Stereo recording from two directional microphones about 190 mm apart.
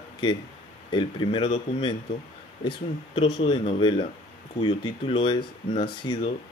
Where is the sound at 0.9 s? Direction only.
25° left (ahead or behind).